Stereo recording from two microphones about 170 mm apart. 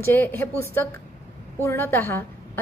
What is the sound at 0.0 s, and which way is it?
A woman's voice, 10° left (ahead or behind).